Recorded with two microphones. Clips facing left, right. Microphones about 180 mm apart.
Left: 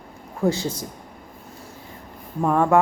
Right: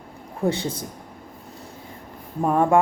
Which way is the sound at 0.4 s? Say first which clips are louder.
Left 1 dB; 30° right (ahead or behind).